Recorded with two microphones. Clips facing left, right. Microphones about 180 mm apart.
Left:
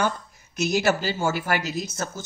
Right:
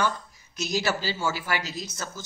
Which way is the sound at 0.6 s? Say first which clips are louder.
Left 5 dB; 55° left (ahead or behind).